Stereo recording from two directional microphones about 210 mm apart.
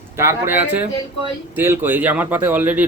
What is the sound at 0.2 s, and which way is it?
Speech, 10° right (ahead or behind).